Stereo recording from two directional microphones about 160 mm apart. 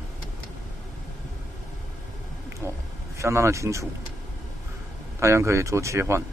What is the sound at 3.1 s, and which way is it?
Speech, 15° right (ahead or behind).